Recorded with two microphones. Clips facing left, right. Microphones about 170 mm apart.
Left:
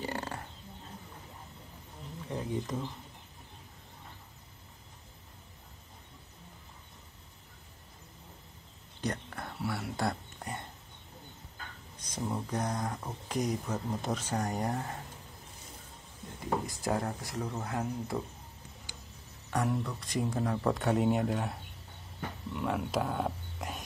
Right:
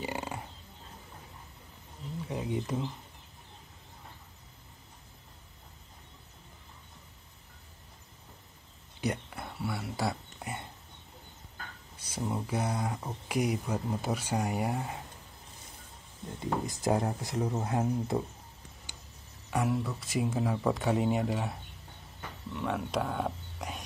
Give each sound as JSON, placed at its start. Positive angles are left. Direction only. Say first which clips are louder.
{"t": 0.0, "sound": "a sound", "louder": "right 1 dB", "side_deg": -10}
{"t": 2.2, "sound": "speech", "louder": "right 1 dB", "side_deg": -10}
{"t": 9.0, "sound": "a sound", "louder": "right 2 dB", "side_deg": -10}
{"t": 12.0, "sound": "speech", "louder": "right 1 dB", "side_deg": -10}
{"t": 16.6, "sound": "speech", "louder": "right 3 dB", "side_deg": -20}
{"t": 19.5, "sound": "speech", "louder": "right 1 dB", "side_deg": -5}